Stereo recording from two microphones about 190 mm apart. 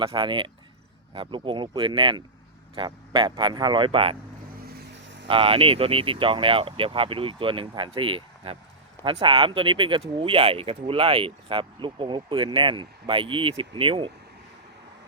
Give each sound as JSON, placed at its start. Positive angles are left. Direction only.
{"t": 0.0, "sound": "speech", "side_deg": -25}
{"t": 4.6, "sound": "vehicle", "side_deg": -60}
{"t": 5.3, "sound": "speech", "side_deg": -30}